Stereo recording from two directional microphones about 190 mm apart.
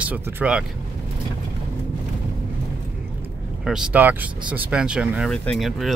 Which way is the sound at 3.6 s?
5° right (ahead or behind).